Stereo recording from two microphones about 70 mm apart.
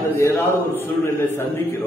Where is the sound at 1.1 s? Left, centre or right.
Left.